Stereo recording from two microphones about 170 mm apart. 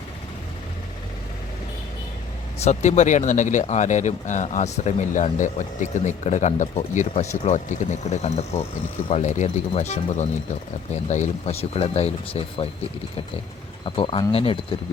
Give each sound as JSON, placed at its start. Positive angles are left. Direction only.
{"t": 2.6, "sound": "speech", "side_deg": 40}
{"t": 13.8, "sound": "speech", "side_deg": 30}